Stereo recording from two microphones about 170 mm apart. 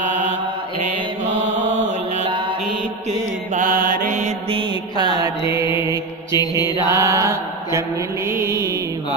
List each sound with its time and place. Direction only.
2.1 s mantra: 35° right (ahead or behind)
3.1 s mantra: 50° right (ahead or behind)
4.5 s mantra: 30° right (ahead or behind)
6.3 s mantra: 25° left (ahead or behind)
6.9 s mantra: 20° right (ahead or behind)
8.3 s music: 15° right (ahead or behind)